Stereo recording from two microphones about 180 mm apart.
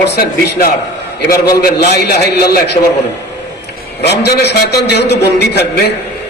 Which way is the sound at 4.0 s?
65° left (ahead or behind).